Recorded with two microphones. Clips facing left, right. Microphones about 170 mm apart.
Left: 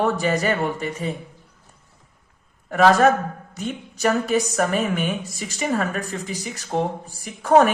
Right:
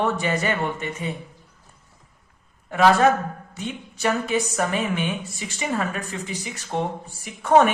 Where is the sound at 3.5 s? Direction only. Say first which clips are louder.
Left 3 dB; 40° left (ahead or behind).